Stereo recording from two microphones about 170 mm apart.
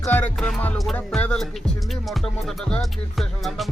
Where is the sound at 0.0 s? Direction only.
5° left (ahead or behind).